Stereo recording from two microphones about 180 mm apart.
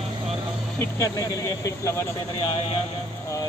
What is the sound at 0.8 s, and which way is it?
Speech, 15° left (ahead or behind).